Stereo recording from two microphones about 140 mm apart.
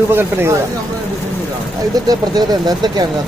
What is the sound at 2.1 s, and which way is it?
Speech, 30° right (ahead or behind).